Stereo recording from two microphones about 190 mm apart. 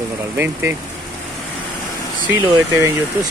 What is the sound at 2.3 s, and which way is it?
Speech, 15° right (ahead or behind).